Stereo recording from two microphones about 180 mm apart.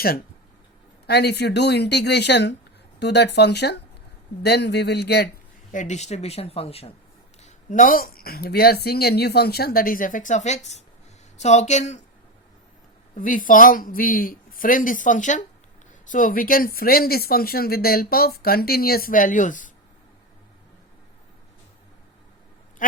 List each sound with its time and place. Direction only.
1.0 s speech: 65° left (ahead or behind)
5.7 s speech: 40° left (ahead or behind)
7.4 s speech: 45° left (ahead or behind)
13.1 s speech: 50° left (ahead or behind)
22.8 s bleat: 50° left (ahead or behind)